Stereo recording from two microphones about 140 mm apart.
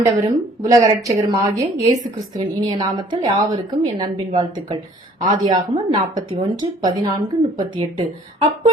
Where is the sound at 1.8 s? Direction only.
55° right (ahead or behind).